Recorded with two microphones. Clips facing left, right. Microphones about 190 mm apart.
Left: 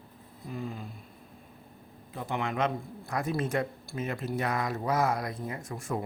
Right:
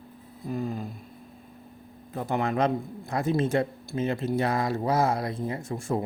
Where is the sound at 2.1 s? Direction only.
40° right (ahead or behind).